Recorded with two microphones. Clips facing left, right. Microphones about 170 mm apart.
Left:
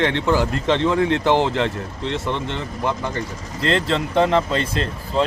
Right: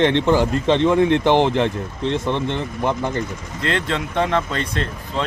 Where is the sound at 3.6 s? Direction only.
35° left (ahead or behind).